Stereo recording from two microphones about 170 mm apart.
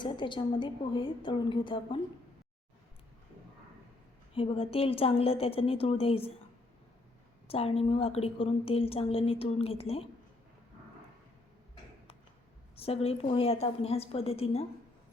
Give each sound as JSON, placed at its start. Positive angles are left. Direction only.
{"t": 0.0, "sound": "a woman's voice", "side_deg": 25}
{"t": 4.4, "sound": "a woman's voice", "side_deg": 35}
{"t": 7.4, "sound": "a woman's voice", "side_deg": 35}
{"t": 12.7, "sound": "a woman's voice", "side_deg": 35}